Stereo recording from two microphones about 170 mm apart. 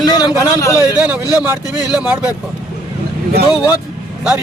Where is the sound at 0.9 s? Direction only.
10° right (ahead or behind).